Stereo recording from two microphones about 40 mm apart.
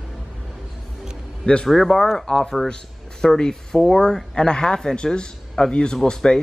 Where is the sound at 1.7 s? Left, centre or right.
Centre.